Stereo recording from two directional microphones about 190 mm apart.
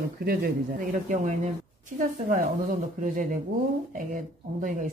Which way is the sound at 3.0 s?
45° right (ahead or behind).